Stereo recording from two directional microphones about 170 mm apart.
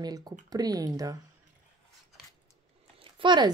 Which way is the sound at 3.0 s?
30° right (ahead or behind).